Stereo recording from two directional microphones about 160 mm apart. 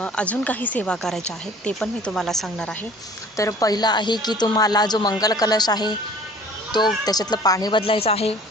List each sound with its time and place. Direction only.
0.0 s a woman's voice: 10° left (ahead or behind)
3.3 s speech: 20° left (ahead or behind)
7.0 s speech: 25° left (ahead or behind)